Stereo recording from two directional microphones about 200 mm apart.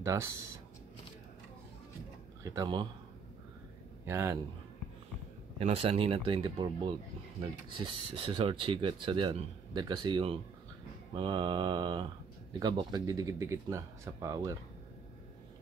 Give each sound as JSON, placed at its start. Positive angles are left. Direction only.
{"t": 0.0, "sound": "speech", "side_deg": -15}
{"t": 2.4, "sound": "speech", "side_deg": -15}
{"t": 4.0, "sound": "a man's voice", "side_deg": -15}
{"t": 5.6, "sound": "speech", "side_deg": -30}